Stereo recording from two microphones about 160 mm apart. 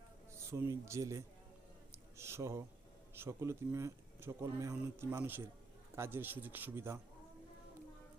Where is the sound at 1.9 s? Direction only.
15° right (ahead or behind).